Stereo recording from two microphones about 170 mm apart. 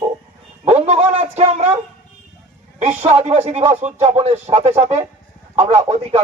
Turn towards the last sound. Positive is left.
turn(degrees=-40)  # may be behind; listen again after turning